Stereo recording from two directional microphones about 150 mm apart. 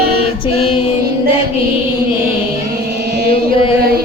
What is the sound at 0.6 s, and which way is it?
Music, 35° left (ahead or behind).